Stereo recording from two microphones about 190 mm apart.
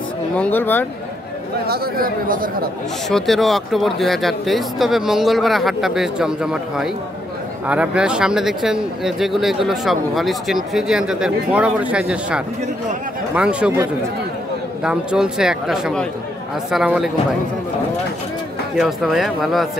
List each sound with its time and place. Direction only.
0.4 s speech: 10° left (ahead or behind)
1.7 s speech: 50° right (ahead or behind)
3.1 s speech: centre (ahead or behind)
14.8 s speech: 5° right (ahead or behind)
18.8 s speech: centre (ahead or behind)